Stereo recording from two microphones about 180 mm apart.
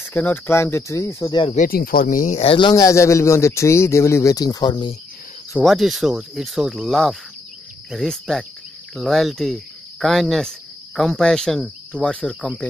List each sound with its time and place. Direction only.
0.0 s speech: 10° left (ahead or behind)
1.4 s speech: 45° left (ahead or behind)
2.4 s speech: 25° left (ahead or behind)
5.6 s speech: centre (ahead or behind)